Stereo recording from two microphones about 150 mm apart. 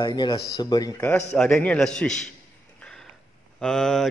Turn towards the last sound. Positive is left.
turn(degrees=5)  # may be behind; listen again after turning